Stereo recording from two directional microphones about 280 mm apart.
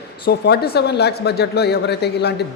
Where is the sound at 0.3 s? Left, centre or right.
Left.